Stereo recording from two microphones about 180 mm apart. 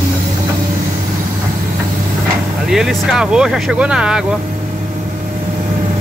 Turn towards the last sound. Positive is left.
turn(degrees=-5)  # may be behind; listen again after turning